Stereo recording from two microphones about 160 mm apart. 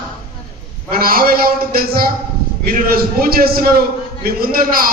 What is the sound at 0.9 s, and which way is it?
A man's voice, 65° right (ahead or behind).